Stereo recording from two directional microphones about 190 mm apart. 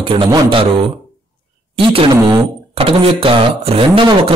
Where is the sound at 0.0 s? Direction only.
25° right (ahead or behind).